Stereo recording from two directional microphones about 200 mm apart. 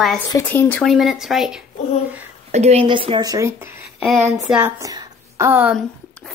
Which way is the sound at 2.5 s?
30° right (ahead or behind).